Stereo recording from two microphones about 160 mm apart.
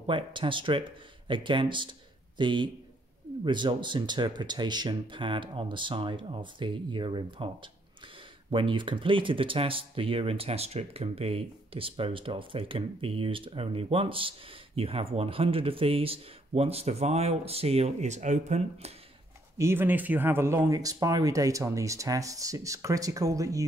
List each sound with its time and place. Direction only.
0.0 s a man's voice: 30° right (ahead or behind)
19.6 s speech: 15° right (ahead or behind)